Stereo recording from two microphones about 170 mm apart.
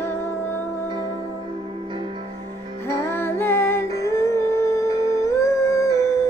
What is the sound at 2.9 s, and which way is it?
Music, 15° left (ahead or behind).